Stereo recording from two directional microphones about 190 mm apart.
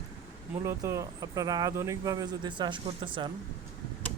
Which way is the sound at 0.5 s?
15° right (ahead or behind).